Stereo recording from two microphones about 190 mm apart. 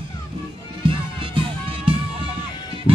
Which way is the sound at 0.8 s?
25° right (ahead or behind).